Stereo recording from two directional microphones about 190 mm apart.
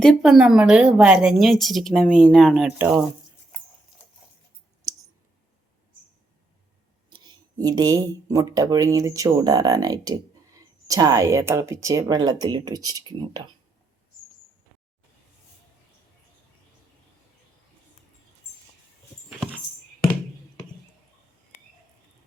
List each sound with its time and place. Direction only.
0.0 s a woman's voice: 5° right (ahead or behind)
7.2 s speech: 20° right (ahead or behind)